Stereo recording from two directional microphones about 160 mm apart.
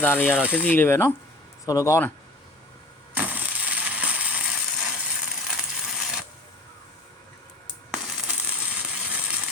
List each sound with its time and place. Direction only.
0.0 s speech: 10° left (ahead or behind)
3.2 s mechanisms: 10° right (ahead or behind)
7.9 s coin: centre (ahead or behind)